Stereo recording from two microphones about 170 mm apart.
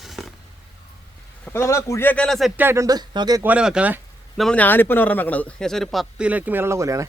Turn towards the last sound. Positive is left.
turn(degrees=-20)  # may be behind; listen again after turning